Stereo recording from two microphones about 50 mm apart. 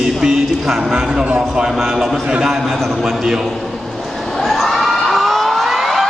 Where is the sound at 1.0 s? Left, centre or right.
Centre.